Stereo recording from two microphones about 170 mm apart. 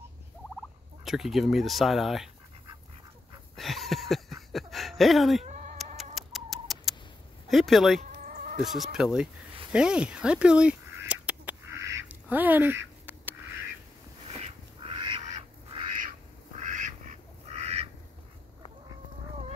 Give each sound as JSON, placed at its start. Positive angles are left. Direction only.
{"t": 1.0, "sound": "speech", "side_deg": 0}
{"t": 3.5, "sound": "a sound", "side_deg": 0}
{"t": 5.4, "sound": "bleat", "side_deg": -45}
{"t": 6.1, "sound": "cat", "side_deg": 0}
{"t": 7.4, "sound": "speech", "side_deg": 0}
{"t": 8.0, "sound": "chicken", "side_deg": -45}
{"t": 8.6, "sound": "speech", "side_deg": 0}
{"t": 9.7, "sound": "duck", "side_deg": -5}
{"t": 14.4, "sound": "duck", "side_deg": -30}
{"t": 15.2, "sound": "duck", "side_deg": -40}